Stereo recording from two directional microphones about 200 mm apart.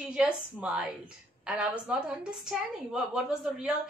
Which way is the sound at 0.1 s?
5° right (ahead or behind).